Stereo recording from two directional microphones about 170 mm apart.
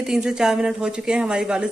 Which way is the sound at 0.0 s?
5° right (ahead or behind).